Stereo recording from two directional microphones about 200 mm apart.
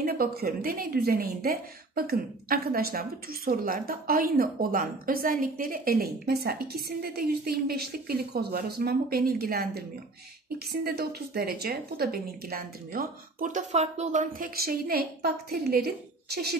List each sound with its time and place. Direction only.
0.0 s speech: 50° right (ahead or behind)